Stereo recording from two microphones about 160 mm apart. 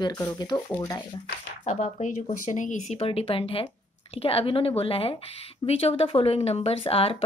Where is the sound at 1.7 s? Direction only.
45° left (ahead or behind).